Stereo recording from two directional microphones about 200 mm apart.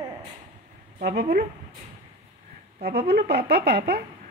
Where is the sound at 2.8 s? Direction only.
55° right (ahead or behind).